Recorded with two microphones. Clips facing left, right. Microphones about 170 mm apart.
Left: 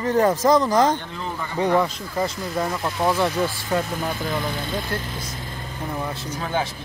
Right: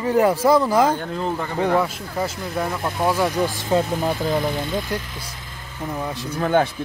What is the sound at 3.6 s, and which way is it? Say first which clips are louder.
Speech: right 4 dB; 25° right (ahead or behind).